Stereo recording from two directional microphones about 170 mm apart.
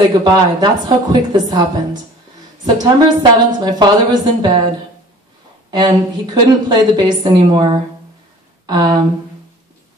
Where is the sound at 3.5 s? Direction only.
25° right (ahead or behind).